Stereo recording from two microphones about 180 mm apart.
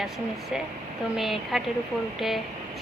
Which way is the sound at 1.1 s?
Centre (ahead or behind).